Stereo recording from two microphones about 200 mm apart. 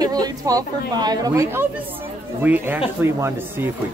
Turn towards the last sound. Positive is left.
turn(degrees=-10)  # may be behind; listen again after turning